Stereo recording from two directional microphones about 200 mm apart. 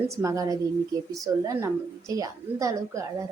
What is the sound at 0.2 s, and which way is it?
A woman's voice, 15° right (ahead or behind).